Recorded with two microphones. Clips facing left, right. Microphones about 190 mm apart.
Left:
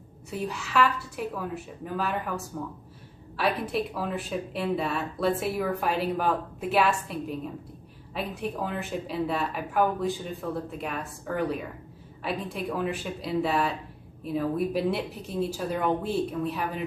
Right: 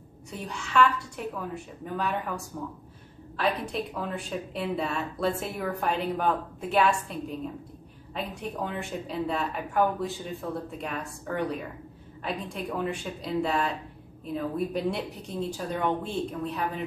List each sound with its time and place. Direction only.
0.3 s a woman's voice: 5° left (ahead or behind)